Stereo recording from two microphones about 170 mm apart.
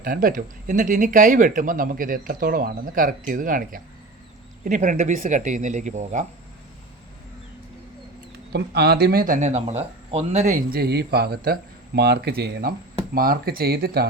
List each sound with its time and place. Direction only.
0.0 s speech: 55° right (ahead or behind)
8.5 s speech: 75° right (ahead or behind); by 10.5 s 40° right (ahead or behind)
10.5 s speech: 60° right (ahead or behind)
13.1 s speech: 60° right (ahead or behind)